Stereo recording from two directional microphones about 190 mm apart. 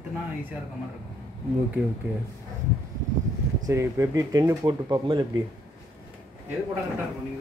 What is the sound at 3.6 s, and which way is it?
Speech, 15° right (ahead or behind).